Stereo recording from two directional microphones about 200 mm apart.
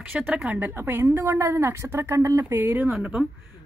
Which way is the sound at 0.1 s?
5° right (ahead or behind).